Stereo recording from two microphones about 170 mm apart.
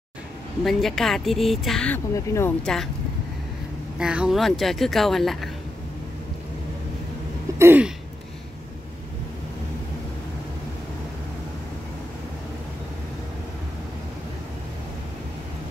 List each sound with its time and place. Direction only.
0.7 s speech: centre (ahead or behind)
2.1 s speech: 15° left (ahead or behind)
2.6 s speech: 5° left (ahead or behind)
4.0 s speech: 5° right (ahead or behind)
7.5 s throat clearing: 10° right (ahead or behind)